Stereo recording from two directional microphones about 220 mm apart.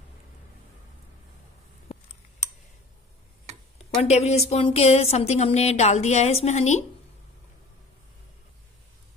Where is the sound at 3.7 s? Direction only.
30° left (ahead or behind).